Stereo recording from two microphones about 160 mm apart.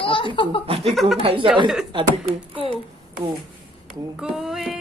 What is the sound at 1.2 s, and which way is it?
Speech, 35° right (ahead or behind).